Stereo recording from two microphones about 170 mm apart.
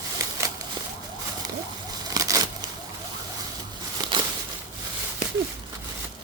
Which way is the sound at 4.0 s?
25° right (ahead or behind).